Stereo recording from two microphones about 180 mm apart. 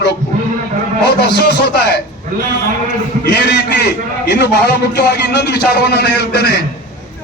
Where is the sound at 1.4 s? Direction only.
65° left (ahead or behind).